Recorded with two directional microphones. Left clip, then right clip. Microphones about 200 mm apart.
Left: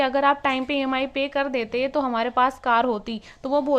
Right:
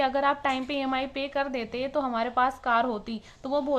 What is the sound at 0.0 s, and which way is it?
A woman's voice, 35° left (ahead or behind).